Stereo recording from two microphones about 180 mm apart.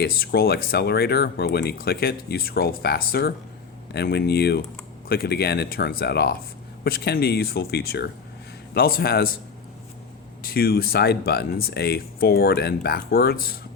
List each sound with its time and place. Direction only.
0.0 s speech: 60° left (ahead or behind)
10.4 s speech: 60° left (ahead or behind)